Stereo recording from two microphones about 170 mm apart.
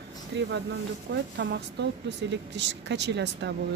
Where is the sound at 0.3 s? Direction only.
90° right.